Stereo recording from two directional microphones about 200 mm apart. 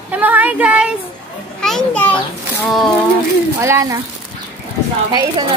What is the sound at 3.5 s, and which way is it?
Speech, 15° right (ahead or behind).